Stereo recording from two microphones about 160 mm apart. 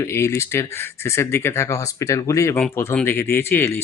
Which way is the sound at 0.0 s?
15° left (ahead or behind).